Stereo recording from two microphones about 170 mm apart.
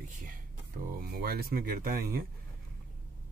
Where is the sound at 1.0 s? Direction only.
65° right (ahead or behind).